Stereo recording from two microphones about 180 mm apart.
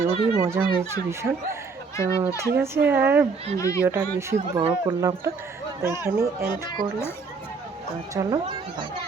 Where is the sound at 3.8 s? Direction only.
15° right (ahead or behind).